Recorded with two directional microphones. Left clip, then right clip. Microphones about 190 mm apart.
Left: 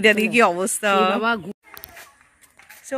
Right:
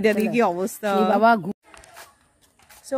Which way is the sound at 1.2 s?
75° right (ahead or behind).